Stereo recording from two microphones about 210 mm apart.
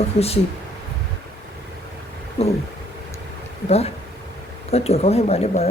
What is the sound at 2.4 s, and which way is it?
Speech, 30° left (ahead or behind).